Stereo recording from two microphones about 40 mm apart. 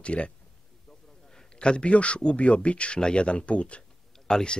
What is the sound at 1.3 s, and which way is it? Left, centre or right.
Speech, centre.